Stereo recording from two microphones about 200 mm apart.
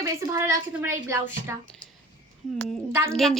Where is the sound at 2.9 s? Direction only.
10° right (ahead or behind).